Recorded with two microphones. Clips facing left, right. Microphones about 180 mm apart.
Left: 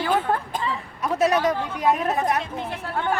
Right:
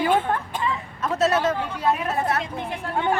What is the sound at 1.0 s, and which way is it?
Speech, 10° left (ahead or behind).